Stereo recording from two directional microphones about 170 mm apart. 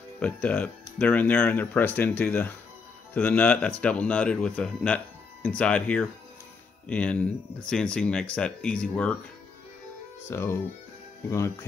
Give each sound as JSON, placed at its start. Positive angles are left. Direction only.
{"t": 0.2, "sound": "speech", "side_deg": 10}
{"t": 10.3, "sound": "speech", "side_deg": 15}